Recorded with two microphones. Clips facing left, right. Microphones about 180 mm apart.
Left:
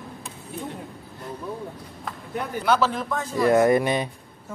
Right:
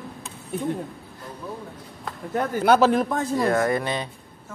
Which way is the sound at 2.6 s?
55° right (ahead or behind).